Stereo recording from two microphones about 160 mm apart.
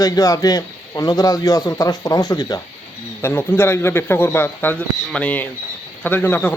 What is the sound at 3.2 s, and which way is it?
A man's voice, 15° left (ahead or behind).